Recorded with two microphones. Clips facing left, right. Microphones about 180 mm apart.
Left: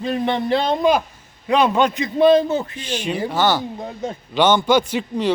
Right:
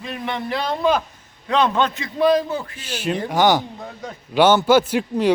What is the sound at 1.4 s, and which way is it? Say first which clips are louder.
Speech: left 2 dB; 10° left (ahead or behind).